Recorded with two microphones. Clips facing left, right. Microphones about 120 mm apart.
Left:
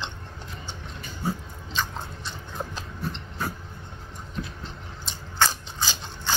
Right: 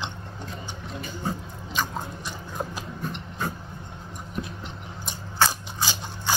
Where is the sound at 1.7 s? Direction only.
15° right (ahead or behind).